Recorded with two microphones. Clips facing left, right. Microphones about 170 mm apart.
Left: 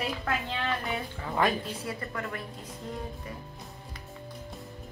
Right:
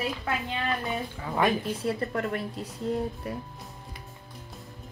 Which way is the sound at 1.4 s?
25° right (ahead or behind).